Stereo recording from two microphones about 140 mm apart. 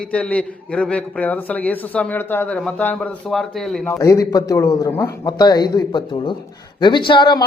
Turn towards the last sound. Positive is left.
turn(degrees=35)  # may be behind; listen again after turning